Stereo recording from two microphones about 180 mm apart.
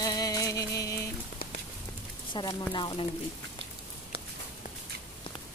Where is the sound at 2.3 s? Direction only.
25° left (ahead or behind).